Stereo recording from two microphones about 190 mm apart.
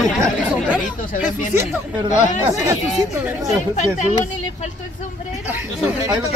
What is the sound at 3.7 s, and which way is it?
Speech, 40° left (ahead or behind).